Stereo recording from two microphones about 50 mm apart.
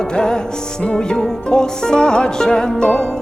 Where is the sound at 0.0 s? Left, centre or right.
Centre.